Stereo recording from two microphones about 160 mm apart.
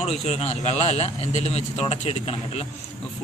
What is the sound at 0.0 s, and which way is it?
A man's voice, 40° left (ahead or behind).